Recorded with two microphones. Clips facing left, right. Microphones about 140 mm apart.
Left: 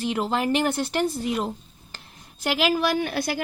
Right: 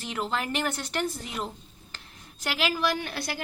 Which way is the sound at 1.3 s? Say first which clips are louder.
Left 6 dB; 40° left (ahead or behind).